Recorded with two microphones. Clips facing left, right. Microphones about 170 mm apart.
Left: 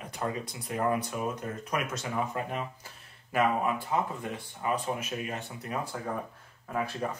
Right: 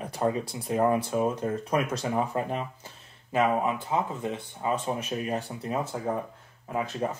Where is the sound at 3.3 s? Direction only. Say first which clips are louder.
Right 2 dB; 20° right (ahead or behind).